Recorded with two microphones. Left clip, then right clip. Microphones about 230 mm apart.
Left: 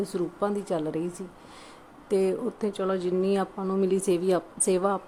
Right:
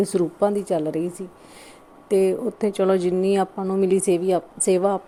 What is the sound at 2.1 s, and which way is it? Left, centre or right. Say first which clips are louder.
A woman's voice: right 6 dB; centre.